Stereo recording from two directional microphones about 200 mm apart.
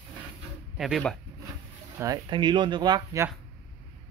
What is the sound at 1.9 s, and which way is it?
Speech, 15° right (ahead or behind).